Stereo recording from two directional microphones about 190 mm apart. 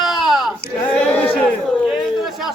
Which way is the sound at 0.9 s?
10° left (ahead or behind).